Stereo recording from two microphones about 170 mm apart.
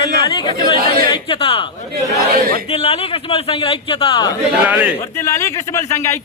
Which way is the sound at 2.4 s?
60° right (ahead or behind).